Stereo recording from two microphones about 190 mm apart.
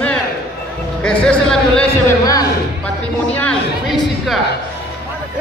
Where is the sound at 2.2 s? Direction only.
20° left (ahead or behind).